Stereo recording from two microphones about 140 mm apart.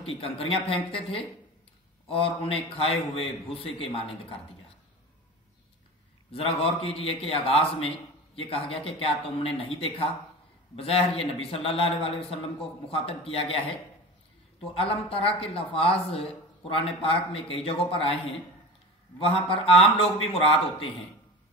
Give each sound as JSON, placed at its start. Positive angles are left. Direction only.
{"t": 0.0, "sound": "a man's voice", "side_deg": 40}
{"t": 6.3, "sound": "a man's voice", "side_deg": 40}
{"t": 14.7, "sound": "a man's voice", "side_deg": 40}
{"t": 19.1, "sound": "a man's voice", "side_deg": 40}